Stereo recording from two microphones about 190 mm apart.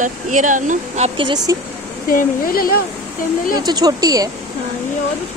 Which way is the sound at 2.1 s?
50° left (ahead or behind).